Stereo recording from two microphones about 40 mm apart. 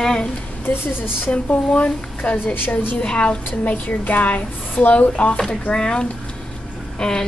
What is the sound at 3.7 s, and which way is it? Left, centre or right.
Speech, left.